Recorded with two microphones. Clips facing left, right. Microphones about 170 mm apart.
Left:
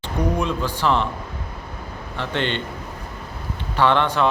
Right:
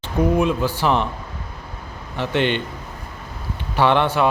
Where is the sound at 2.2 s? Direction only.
15° right (ahead or behind).